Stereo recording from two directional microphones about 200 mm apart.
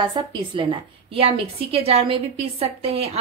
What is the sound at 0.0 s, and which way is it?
A woman's voice, 20° right (ahead or behind).